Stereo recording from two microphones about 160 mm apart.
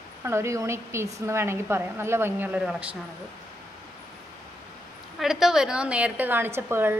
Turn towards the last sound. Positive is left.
turn(degrees=-15)  # may be behind; listen again after turning